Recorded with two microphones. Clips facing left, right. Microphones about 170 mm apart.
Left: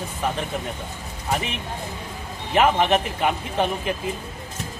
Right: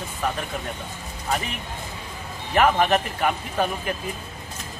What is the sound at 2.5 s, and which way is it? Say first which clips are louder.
Speech: left 1 dB; 20° left (ahead or behind).